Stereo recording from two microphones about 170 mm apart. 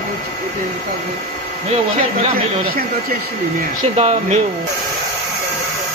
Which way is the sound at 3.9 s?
40° right (ahead or behind).